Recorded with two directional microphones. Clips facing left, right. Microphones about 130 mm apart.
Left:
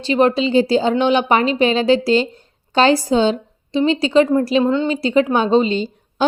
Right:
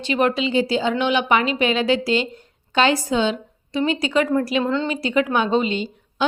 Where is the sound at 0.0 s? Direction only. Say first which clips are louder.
Left 5 dB; 30° left (ahead or behind).